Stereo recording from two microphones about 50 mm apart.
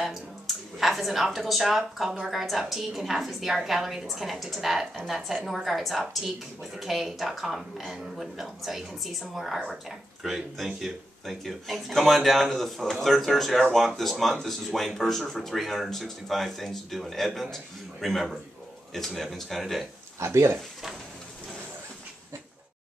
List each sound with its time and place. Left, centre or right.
0.0 s a sound: centre
1.3 s a woman's voice: centre
20.2 s speech: right